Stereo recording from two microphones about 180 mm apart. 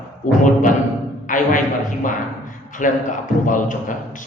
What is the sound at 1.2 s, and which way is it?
A man's voice, 50° left (ahead or behind).